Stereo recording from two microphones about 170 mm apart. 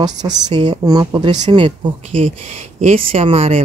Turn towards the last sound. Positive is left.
turn(degrees=-35)  # may be behind; listen again after turning